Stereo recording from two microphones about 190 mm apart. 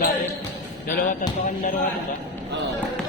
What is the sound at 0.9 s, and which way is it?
Music, 50° left (ahead or behind).